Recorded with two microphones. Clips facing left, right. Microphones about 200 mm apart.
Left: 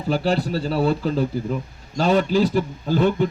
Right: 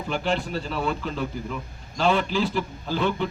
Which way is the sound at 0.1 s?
35° left (ahead or behind).